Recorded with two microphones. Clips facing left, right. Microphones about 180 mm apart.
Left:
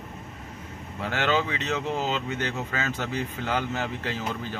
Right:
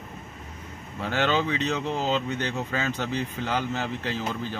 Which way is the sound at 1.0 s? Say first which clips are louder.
Right 1 dB; 10° left (ahead or behind).